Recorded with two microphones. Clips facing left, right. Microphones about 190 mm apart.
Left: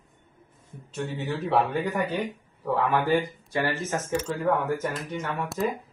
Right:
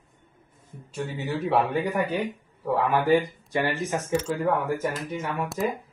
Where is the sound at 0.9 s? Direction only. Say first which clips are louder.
Right 1 dB; 10° right (ahead or behind).